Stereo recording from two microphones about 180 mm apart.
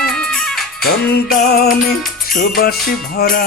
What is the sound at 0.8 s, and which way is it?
Music, 55° left (ahead or behind).